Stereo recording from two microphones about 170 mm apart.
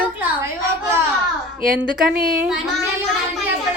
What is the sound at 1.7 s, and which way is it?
Speech, 5° right (ahead or behind).